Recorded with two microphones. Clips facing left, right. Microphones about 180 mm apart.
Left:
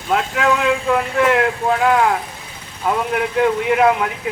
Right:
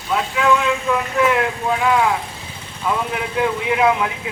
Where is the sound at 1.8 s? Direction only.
50° left (ahead or behind).